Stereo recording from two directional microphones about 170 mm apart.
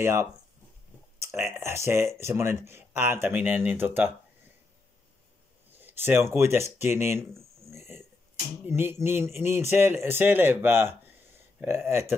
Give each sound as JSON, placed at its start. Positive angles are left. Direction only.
{"t": 0.0, "sound": "a man's voice", "side_deg": -15}
{"t": 5.8, "sound": "a man's voice", "side_deg": -10}
{"t": 8.6, "sound": "a man's voice", "side_deg": -15}